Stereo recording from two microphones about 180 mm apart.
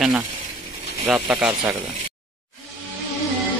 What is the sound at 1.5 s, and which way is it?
Speech, 20° right (ahead or behind).